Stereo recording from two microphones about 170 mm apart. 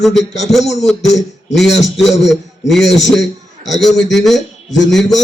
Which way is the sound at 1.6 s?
90° left.